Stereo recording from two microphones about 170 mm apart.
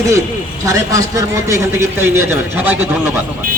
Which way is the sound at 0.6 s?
20° right (ahead or behind).